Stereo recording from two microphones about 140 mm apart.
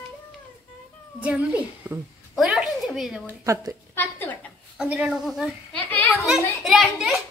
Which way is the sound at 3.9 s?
15° left (ahead or behind).